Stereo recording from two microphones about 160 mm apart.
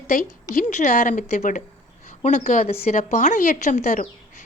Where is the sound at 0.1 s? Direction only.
60° left (ahead or behind).